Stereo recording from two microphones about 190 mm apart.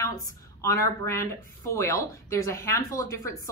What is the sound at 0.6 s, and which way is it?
Speech, 15° left (ahead or behind).